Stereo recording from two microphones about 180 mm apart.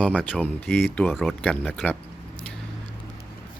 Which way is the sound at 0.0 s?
5° left (ahead or behind).